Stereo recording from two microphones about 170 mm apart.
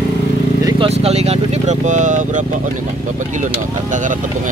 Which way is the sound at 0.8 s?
40° right (ahead or behind).